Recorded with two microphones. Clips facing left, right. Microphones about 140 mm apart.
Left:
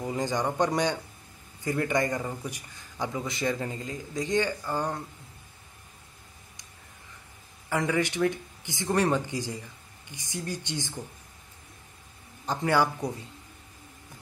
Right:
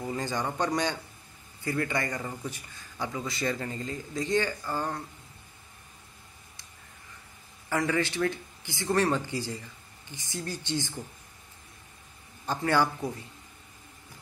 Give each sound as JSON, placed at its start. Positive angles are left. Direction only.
{"t": 0.0, "sound": "a man's voice", "side_deg": 15}
{"t": 7.7, "sound": "a man's voice", "side_deg": 15}
{"t": 12.4, "sound": "a man's voice", "side_deg": 15}